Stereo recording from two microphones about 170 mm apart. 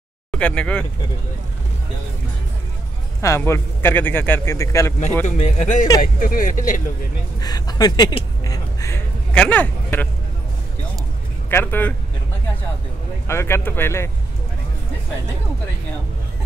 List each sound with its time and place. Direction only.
0.3 s speech: 5° left (ahead or behind)
3.2 s a man's voice: 15° left (ahead or behind)
5.2 s speech: 40° left (ahead or behind)
7.3 s speech: 20° left (ahead or behind)
11.5 s a man's voice: 10° left (ahead or behind)
13.3 s a man's voice: 15° left (ahead or behind)